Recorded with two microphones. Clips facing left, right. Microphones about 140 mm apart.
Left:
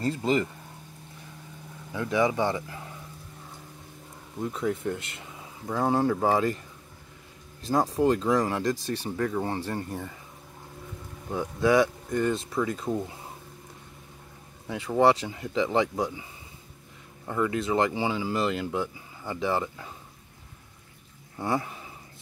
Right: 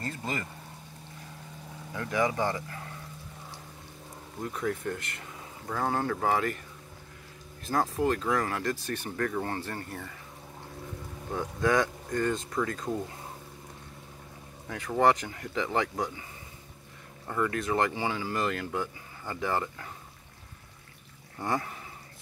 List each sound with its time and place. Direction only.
0.0 s speech: 20° left (ahead or behind)
2.0 s speech: 15° left (ahead or behind)
4.6 s speech: 15° left (ahead or behind)
7.7 s speech: 15° left (ahead or behind)
11.3 s speech: 10° left (ahead or behind)
14.7 s speech: 15° left (ahead or behind)
17.3 s speech: 15° left (ahead or behind)
21.4 s speech: 10° left (ahead or behind)